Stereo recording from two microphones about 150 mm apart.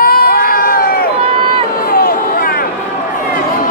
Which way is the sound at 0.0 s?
90° left.